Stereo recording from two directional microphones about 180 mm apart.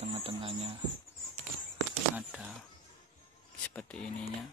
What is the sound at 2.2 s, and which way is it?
Speech, 5° right (ahead or behind).